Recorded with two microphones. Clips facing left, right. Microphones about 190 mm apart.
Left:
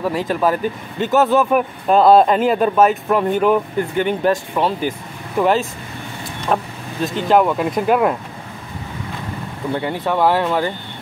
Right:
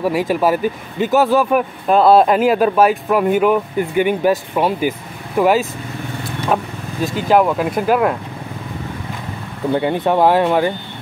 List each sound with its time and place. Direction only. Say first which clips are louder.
0.0 s speech: right 2 dB; 10° right (ahead or behind)
9.8 s speech: right 4 dB; 20° right (ahead or behind)